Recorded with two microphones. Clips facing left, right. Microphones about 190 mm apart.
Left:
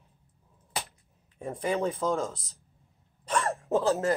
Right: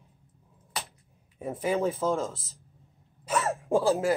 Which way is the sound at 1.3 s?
5° right (ahead or behind).